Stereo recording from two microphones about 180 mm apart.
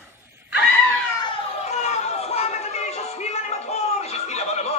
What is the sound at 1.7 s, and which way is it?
Chatter, 40° left (ahead or behind).